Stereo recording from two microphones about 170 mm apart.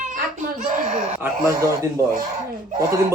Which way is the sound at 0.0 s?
45° right (ahead or behind).